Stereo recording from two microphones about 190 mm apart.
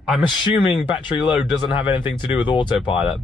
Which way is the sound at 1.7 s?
25° left (ahead or behind).